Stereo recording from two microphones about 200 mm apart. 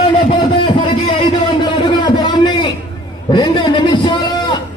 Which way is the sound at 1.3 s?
25° left (ahead or behind).